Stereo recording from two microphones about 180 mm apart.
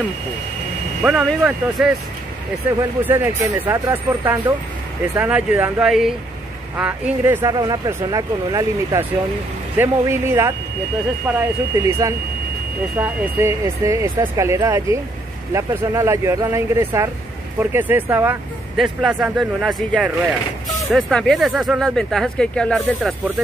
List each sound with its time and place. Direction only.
1.0 s speech: 5° right (ahead or behind)
3.1 s speech: 15° right (ahead or behind)
5.5 s speech: 5° right (ahead or behind)
7.5 s speech: 20° right (ahead or behind); by 23.1 s 5° left (ahead or behind)